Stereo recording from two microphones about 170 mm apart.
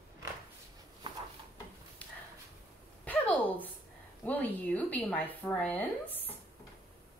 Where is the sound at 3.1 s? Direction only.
10° left (ahead or behind).